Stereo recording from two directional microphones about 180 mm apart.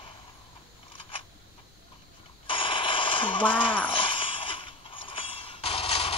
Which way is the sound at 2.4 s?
30° left (ahead or behind).